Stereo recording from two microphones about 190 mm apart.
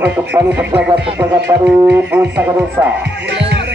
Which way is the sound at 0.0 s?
10° right (ahead or behind).